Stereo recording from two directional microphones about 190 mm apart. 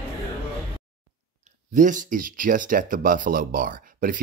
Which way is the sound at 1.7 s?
40° right (ahead or behind).